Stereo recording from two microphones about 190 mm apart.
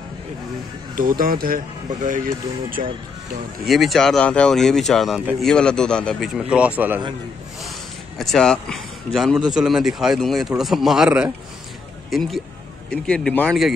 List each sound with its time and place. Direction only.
0.9 s speech: 50° right (ahead or behind)
3.6 s speech: centre (ahead or behind)
8.2 s speech: centre (ahead or behind)